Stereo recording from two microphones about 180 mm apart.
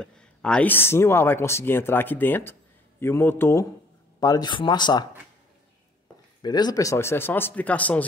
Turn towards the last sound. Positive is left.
turn(degrees=10)  # may be behind; listen again after turning